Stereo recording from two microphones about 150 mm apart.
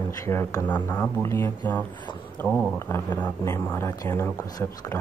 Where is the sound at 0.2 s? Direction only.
20° left (ahead or behind).